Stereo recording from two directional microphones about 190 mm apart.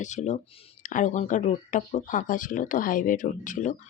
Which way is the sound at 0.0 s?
40° left (ahead or behind).